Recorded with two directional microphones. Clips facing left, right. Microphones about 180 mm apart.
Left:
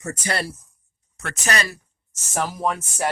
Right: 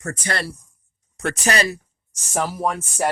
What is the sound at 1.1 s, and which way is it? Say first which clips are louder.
Speech: right 4 dB; 35° right (ahead or behind).